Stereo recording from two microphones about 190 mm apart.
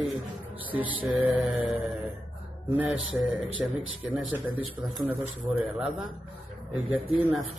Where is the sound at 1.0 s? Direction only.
10° right (ahead or behind).